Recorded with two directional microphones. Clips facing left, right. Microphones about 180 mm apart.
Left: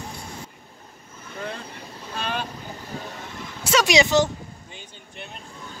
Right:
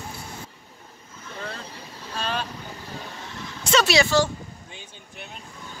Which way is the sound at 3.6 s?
10° left (ahead or behind).